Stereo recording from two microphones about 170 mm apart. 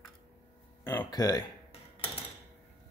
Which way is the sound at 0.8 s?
15° left (ahead or behind).